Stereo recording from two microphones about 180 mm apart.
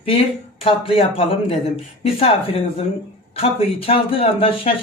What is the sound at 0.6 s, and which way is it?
Speech, 30° left (ahead or behind).